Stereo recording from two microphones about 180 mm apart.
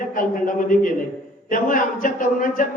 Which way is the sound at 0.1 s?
45° left (ahead or behind).